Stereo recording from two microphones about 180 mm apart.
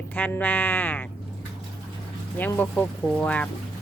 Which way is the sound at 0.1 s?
10° left (ahead or behind).